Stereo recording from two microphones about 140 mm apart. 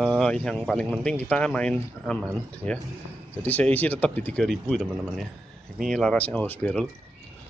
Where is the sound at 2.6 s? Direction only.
50° right (ahead or behind).